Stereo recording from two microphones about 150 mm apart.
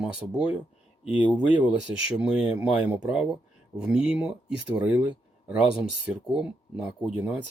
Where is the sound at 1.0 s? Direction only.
35° left (ahead or behind).